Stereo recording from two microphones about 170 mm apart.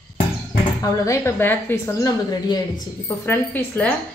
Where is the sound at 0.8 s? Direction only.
20° left (ahead or behind).